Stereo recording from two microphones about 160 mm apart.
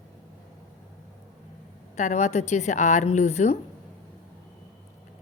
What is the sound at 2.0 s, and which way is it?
A woman's voice, 45° left (ahead or behind).